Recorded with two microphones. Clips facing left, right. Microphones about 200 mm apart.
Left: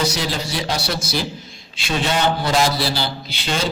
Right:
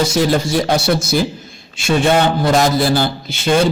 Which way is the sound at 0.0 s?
50° right (ahead or behind).